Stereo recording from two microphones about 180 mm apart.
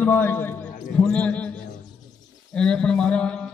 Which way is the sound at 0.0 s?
10° left (ahead or behind).